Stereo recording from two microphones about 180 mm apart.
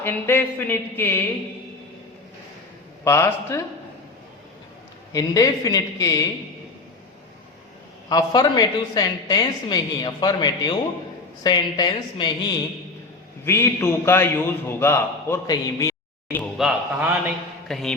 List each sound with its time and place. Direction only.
0.0 s a man's voice: 10° left (ahead or behind)
3.0 s a man's voice: 15° left (ahead or behind)
5.1 s speech: 20° left (ahead or behind)
8.1 s a man's voice: 20° left (ahead or behind)
16.4 s a man's voice: 5° right (ahead or behind)